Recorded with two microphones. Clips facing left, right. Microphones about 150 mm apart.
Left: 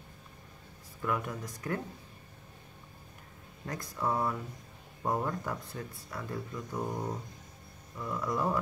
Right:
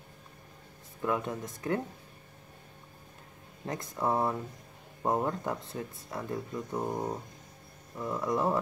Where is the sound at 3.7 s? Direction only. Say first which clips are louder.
Right 3 dB; 25° right (ahead or behind).